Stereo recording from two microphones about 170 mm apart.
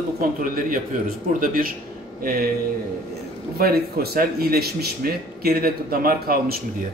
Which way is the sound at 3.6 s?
65° right (ahead or behind).